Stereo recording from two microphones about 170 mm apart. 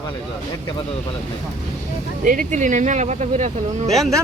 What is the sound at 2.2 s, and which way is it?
Speech, 50° right (ahead or behind).